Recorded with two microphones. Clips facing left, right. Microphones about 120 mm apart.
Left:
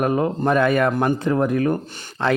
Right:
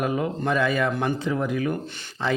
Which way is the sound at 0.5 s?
55° left (ahead or behind).